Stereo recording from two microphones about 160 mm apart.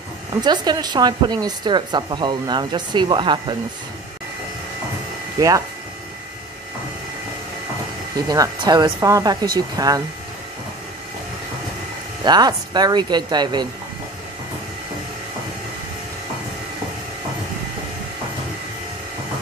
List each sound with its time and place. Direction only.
0.3 s a woman's voice: 25° right (ahead or behind)
8.3 s a woman's voice: 25° right (ahead or behind)
12.3 s a woman's voice: 25° right (ahead or behind)